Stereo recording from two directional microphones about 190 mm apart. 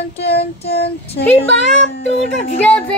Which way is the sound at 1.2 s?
60° left (ahead or behind).